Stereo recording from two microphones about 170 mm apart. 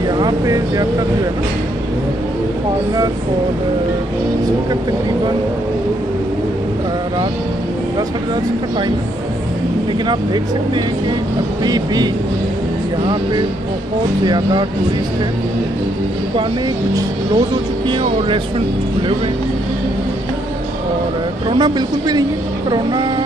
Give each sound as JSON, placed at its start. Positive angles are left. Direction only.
{"t": 0.2, "sound": "speech", "side_deg": -20}
{"t": 10.0, "sound": "speech", "side_deg": -25}
{"t": 14.2, "sound": "speech", "side_deg": -25}
{"t": 17.8, "sound": "speech", "side_deg": -30}
{"t": 21.5, "sound": "speech", "side_deg": -25}